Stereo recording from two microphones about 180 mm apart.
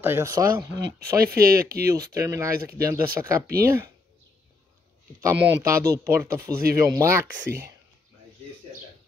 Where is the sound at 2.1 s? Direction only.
20° right (ahead or behind).